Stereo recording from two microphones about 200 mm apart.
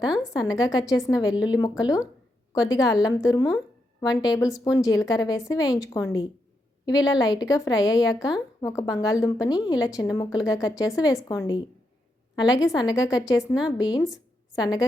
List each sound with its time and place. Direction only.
0.0 s a woman's voice: 5° right (ahead or behind)
0.3 s a woman's voice: 20° left (ahead or behind)
12.4 s a woman's voice: 20° left (ahead or behind)